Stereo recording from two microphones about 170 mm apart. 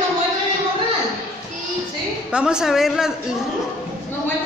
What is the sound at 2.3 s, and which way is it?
Speech, 5° right (ahead or behind).